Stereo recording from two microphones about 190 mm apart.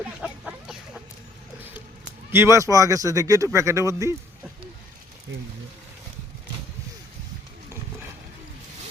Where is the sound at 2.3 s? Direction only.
15° right (ahead or behind).